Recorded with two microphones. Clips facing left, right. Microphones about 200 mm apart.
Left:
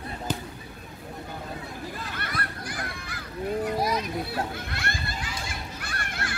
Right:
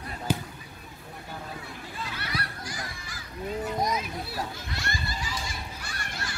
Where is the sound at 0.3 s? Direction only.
10° right (ahead or behind).